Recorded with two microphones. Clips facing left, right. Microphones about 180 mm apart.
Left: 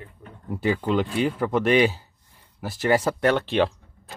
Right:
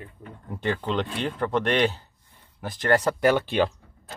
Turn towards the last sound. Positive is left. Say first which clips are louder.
# even
turn(degrees=0)  # may be behind; listen again after turning